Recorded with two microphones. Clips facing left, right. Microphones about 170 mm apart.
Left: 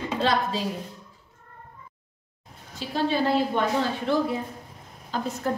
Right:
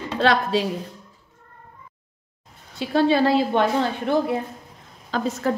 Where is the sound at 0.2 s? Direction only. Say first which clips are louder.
Right 6 dB; 75° right (ahead or behind).